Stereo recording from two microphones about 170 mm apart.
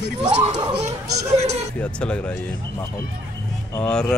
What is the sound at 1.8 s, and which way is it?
Speech, 5° left (ahead or behind).